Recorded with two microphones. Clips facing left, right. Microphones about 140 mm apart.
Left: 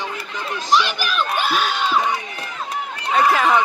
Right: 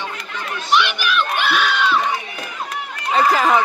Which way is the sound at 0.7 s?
35° left (ahead or behind).